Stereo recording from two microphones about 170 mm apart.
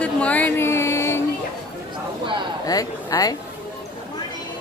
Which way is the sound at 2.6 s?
20° left (ahead or behind).